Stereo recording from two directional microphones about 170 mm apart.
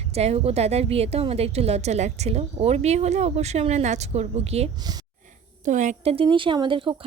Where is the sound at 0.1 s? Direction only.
40° right (ahead or behind).